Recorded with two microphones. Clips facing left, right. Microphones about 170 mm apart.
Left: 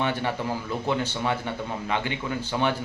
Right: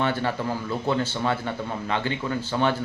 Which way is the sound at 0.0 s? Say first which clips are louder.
Right 2 dB; 15° left (ahead or behind).